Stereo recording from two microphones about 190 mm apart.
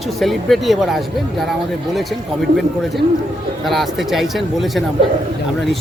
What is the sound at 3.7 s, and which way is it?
Speech, centre (ahead or behind).